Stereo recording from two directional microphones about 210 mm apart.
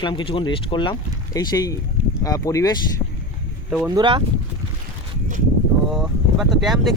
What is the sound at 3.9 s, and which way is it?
Speech, 25° right (ahead or behind).